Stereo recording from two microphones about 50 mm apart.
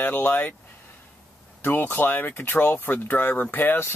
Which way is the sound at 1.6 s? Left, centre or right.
Left.